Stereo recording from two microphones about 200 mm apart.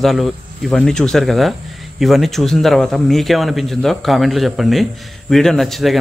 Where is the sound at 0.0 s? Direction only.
Centre (ahead or behind).